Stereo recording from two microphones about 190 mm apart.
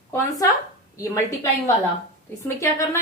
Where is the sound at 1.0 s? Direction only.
15° left (ahead or behind).